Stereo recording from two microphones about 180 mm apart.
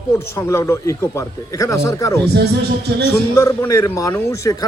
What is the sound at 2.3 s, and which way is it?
Speech, 65° right (ahead or behind).